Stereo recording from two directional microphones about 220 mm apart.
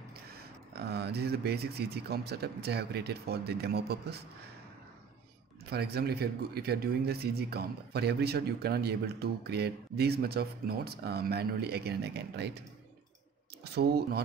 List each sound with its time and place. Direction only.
0.3 s speech: 45° right (ahead or behind)
5.7 s speech: 45° right (ahead or behind)
13.7 s speech: 45° right (ahead or behind)